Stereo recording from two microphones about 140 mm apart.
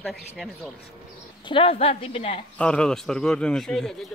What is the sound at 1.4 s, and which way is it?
Speech, 40° left (ahead or behind).